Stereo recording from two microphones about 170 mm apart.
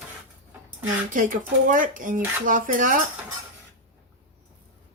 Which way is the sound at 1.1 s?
50° right (ahead or behind).